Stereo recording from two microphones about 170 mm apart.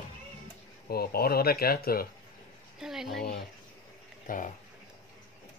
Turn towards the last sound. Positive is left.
turn(degrees=50)  # may be behind; listen again after turning